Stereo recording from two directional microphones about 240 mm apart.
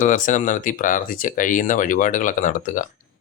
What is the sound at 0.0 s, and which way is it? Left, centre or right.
Speech, left.